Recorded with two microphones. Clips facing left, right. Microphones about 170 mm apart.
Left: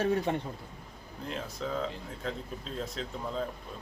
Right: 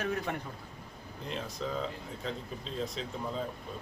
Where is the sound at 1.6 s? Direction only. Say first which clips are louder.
Left 1 dB; centre (ahead or behind).